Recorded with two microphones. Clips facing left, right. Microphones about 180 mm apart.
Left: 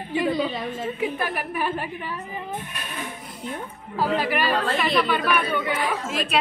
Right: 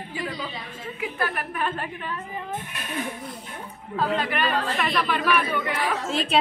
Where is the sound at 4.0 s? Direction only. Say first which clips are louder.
Left 2 dB; 10° left (ahead or behind).